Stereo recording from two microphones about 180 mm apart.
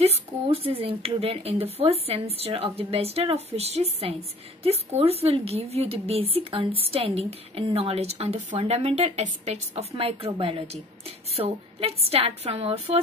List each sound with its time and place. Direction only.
0.0 s a woman's voice: 35° right (ahead or behind)